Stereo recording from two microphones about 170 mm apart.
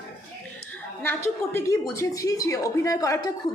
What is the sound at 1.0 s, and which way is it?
A woman's voice, 15° left (ahead or behind).